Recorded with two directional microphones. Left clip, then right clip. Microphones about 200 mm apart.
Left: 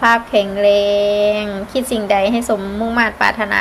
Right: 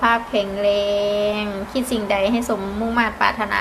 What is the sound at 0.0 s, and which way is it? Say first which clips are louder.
A woman's voice: left 5 dB; 25° left (ahead or behind).